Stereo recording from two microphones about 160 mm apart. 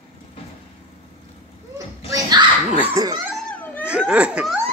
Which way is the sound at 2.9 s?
25° right (ahead or behind).